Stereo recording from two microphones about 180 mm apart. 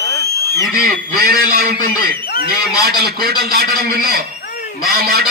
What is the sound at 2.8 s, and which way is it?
A man's voice, 60° right (ahead or behind).